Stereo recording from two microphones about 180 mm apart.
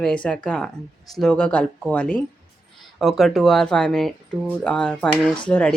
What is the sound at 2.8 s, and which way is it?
Speech, centre (ahead or behind).